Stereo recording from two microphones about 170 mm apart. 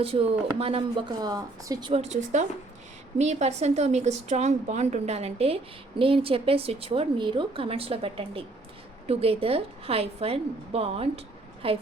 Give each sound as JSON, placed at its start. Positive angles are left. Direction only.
{"t": 0.0, "sound": "speech", "side_deg": -35}
{"t": 1.9, "sound": "a woman's voice", "side_deg": -40}